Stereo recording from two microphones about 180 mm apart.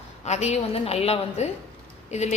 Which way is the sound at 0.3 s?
40° left (ahead or behind).